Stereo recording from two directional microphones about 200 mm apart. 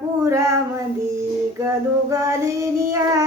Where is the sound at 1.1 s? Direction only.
15° right (ahead or behind).